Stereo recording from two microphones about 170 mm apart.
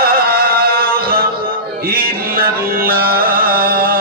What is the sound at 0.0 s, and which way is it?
Music, 65° right (ahead or behind).